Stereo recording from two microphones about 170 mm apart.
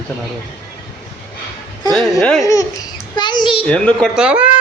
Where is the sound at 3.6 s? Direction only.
5° left (ahead or behind).